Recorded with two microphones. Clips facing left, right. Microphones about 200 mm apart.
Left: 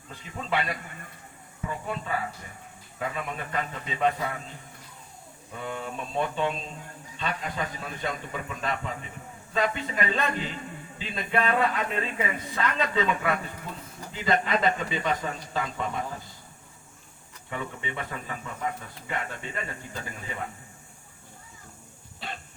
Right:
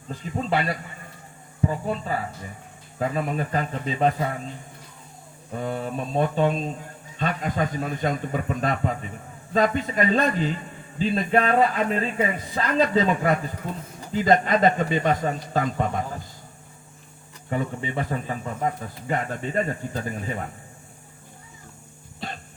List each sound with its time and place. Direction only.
0.1 s speech: 35° right (ahead or behind)
5.5 s a man's voice: 40° right (ahead or behind)
17.5 s speech: 40° right (ahead or behind)